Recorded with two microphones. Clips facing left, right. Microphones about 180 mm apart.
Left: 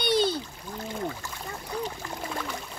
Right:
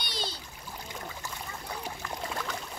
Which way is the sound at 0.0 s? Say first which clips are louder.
Left 14 dB; 55° left (ahead or behind).